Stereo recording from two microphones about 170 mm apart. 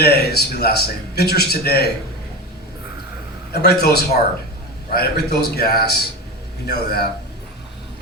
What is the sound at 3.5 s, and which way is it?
A man's voice, 70° left (ahead or behind).